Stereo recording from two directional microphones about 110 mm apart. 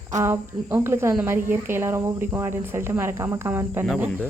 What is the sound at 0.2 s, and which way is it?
Speech, 25° right (ahead or behind).